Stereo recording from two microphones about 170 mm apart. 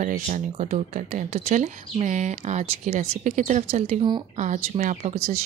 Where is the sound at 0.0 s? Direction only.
50° right (ahead or behind).